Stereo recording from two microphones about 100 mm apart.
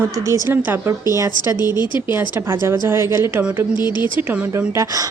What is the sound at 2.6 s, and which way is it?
Speech, 25° right (ahead or behind).